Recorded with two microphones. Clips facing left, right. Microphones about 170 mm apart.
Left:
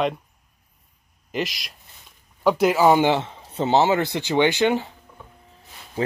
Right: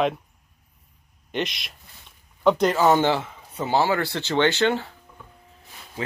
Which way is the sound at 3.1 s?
25° left (ahead or behind).